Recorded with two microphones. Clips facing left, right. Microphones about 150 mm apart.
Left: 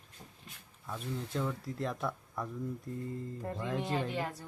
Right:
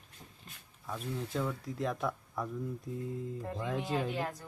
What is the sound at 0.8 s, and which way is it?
Speech, centre (ahead or behind).